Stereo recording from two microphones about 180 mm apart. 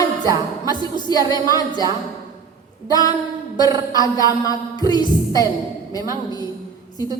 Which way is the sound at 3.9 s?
20° left (ahead or behind).